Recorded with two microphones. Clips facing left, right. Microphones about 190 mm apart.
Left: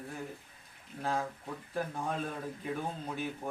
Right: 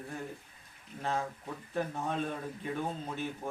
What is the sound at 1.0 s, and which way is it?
A man's voice, 5° left (ahead or behind).